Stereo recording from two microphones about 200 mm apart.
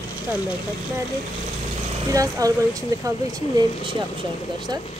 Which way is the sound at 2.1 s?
15° right (ahead or behind).